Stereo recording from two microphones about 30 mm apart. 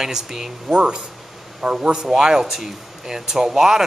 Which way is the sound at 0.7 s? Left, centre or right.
Right.